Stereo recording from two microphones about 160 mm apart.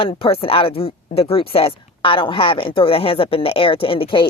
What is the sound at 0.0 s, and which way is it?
Speech, 35° left (ahead or behind).